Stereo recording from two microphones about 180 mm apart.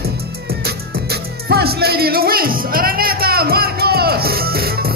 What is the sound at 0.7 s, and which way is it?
Music, 60° right (ahead or behind).